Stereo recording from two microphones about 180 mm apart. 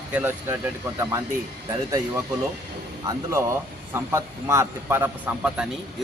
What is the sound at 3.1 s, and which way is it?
A man's voice, 15° right (ahead or behind).